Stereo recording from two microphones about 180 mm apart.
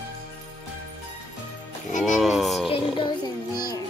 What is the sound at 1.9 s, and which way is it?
Speech, 45° left (ahead or behind).